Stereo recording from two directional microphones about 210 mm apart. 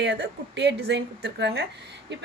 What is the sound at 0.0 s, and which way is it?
A woman's voice, 55° right (ahead or behind).